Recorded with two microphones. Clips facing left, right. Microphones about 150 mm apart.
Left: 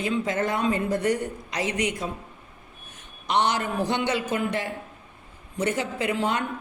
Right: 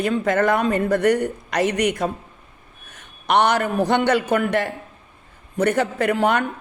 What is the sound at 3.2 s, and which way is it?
Speech, 65° right (ahead or behind).